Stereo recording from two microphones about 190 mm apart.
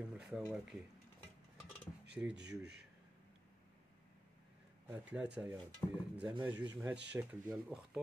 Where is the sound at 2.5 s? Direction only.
60° right (ahead or behind).